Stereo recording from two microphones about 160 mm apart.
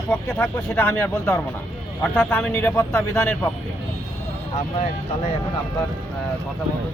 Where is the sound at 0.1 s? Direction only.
10° left (ahead or behind).